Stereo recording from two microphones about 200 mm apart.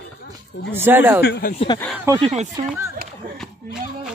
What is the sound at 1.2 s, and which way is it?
Speech, 55° left (ahead or behind).